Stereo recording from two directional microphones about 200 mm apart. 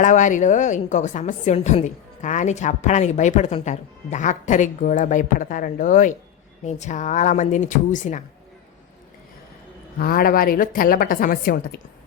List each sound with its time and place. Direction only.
0.0 s a woman's voice: 40° left (ahead or behind)
10.0 s a woman's voice: 45° left (ahead or behind)